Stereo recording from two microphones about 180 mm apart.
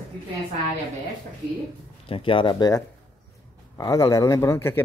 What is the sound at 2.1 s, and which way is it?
Speech, 30° left (ahead or behind).